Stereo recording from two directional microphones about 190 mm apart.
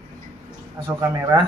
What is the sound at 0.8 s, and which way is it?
Speech, 20° right (ahead or behind).